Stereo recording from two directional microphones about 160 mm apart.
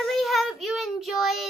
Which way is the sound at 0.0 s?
Centre (ahead or behind).